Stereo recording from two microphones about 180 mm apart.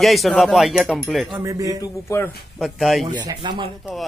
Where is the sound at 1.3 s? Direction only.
20° right (ahead or behind).